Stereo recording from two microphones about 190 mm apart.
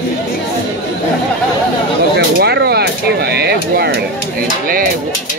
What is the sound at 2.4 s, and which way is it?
Speech, 60° right (ahead or behind).